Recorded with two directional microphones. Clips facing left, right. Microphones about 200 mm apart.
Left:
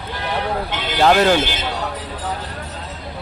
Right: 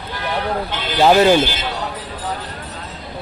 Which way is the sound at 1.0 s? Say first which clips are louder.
Right 2 dB; 5° right (ahead or behind).